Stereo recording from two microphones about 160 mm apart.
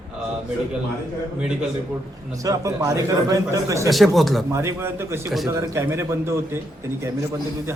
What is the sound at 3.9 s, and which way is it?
Speech, centre (ahead or behind).